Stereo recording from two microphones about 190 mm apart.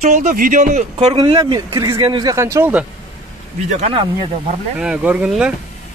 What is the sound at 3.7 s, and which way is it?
Speech, 35° right (ahead or behind).